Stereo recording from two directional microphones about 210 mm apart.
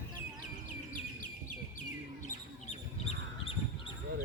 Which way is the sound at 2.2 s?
30° left (ahead or behind).